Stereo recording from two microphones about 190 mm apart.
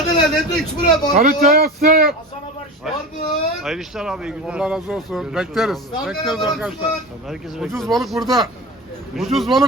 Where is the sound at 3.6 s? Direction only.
Centre (ahead or behind).